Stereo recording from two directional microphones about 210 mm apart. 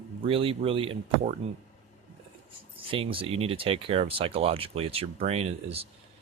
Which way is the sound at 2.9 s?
25° right (ahead or behind).